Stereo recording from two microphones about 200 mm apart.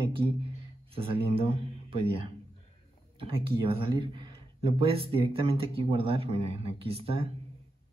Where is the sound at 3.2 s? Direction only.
25° right (ahead or behind).